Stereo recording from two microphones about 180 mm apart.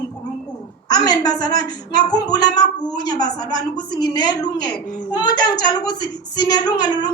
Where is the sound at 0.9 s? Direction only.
20° left (ahead or behind).